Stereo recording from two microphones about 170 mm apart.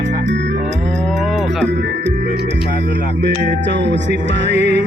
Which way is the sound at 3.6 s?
90° right.